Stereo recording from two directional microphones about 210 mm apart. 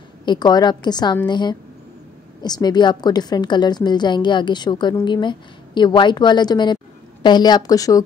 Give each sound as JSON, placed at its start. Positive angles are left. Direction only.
{"t": 0.2, "sound": "a woman's voice", "side_deg": 20}